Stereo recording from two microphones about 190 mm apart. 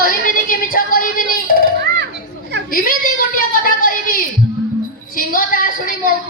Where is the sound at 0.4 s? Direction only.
50° left (ahead or behind).